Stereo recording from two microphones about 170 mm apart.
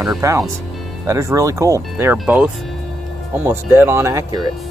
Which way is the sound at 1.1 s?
15° right (ahead or behind).